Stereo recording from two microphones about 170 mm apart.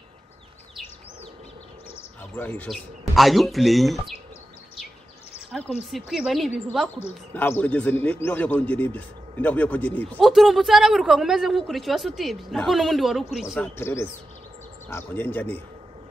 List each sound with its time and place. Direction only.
2.3 s a man's voice: 10° left (ahead or behind)
5.5 s a man's voice: centre (ahead or behind)
7.3 s a man's voice: 10° left (ahead or behind)
13.6 s speech: 15° left (ahead or behind)